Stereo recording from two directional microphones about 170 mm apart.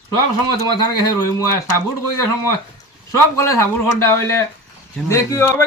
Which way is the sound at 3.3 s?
20° left (ahead or behind).